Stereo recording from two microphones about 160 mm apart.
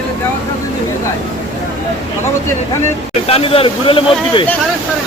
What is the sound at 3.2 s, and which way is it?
Speech, 35° left (ahead or behind).